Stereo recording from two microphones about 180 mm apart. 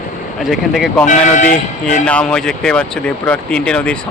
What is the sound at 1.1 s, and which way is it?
Speech, 45° left (ahead or behind).